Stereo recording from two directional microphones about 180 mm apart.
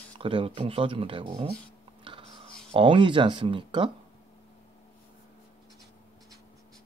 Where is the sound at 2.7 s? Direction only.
25° right (ahead or behind).